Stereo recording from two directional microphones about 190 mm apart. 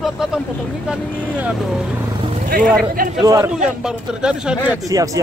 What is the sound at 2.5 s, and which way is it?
Speech, 50° right (ahead or behind).